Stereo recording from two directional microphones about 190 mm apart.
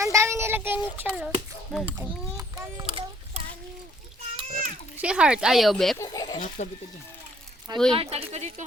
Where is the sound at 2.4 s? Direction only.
15° right (ahead or behind).